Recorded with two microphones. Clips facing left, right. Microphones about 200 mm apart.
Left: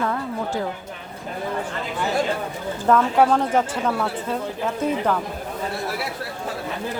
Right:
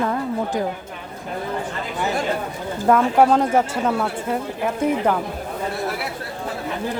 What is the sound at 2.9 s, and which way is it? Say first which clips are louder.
Speech: right 2 dB; 10° right (ahead or behind).